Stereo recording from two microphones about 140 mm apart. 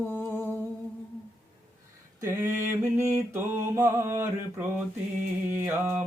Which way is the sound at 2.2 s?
15° right (ahead or behind).